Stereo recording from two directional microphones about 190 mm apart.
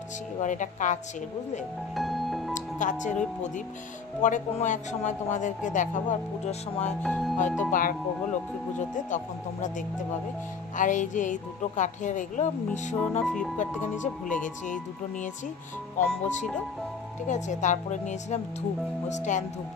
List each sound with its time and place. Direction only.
0.4 s a woman's voice: 40° left (ahead or behind)
2.0 s music: centre (ahead or behind)
2.5 s speech: 40° left (ahead or behind)
4.2 s a woman's voice: 40° left (ahead or behind)
7.0 s music: 5° left (ahead or behind)
7.3 s a woman's voice: 40° left (ahead or behind)
8.9 s a woman's voice: 40° left (ahead or behind)
17.3 s a woman's voice: 40° left (ahead or behind)